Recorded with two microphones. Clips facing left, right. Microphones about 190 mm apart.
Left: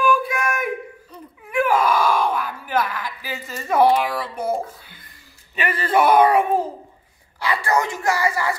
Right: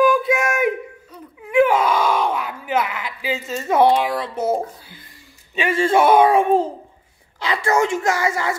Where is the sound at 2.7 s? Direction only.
20° right (ahead or behind).